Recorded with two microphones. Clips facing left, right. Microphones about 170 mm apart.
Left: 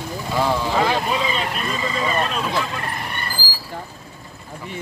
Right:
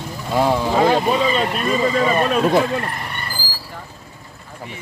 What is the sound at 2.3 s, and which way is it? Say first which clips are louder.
Vehicle: right 8 dB; 50° right (ahead or behind).